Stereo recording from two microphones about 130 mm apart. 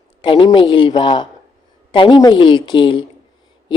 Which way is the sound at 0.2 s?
40° left (ahead or behind).